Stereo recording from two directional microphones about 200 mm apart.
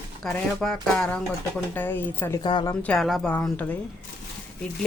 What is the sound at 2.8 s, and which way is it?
Speech, 5° left (ahead or behind).